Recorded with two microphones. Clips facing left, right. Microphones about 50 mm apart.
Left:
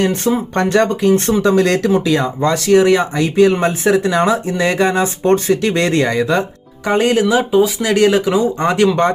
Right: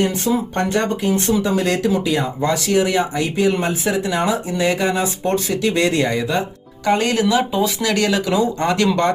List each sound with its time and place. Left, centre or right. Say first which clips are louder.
0.0 s speech: left 3 dB; left
6.8 s speech: left 3 dB; left